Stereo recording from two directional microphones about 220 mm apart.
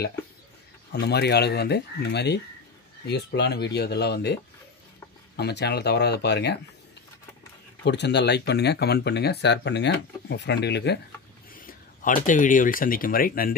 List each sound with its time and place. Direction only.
0.9 s speech: 50° left (ahead or behind)
7.8 s speech: 50° left (ahead or behind)
11.5 s speech: 40° left (ahead or behind)